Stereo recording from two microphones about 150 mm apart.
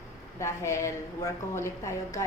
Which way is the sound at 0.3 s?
20° left (ahead or behind).